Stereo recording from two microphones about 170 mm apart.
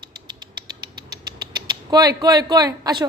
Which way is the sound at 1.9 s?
20° right (ahead or behind).